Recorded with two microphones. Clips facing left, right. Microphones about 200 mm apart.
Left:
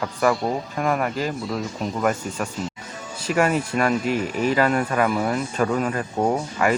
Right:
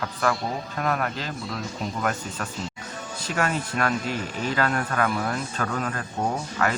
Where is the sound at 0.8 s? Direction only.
10° left (ahead or behind).